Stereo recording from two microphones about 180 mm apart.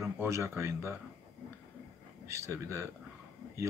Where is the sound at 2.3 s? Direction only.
15° right (ahead or behind).